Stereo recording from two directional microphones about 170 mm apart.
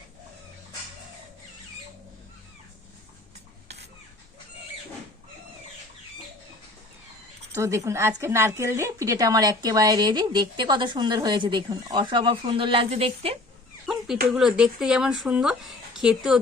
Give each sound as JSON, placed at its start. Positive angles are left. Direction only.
{"t": 7.5, "sound": "speech", "side_deg": -15}
{"t": 13.8, "sound": "a sound", "side_deg": 0}
{"t": 14.3, "sound": "speech", "side_deg": -5}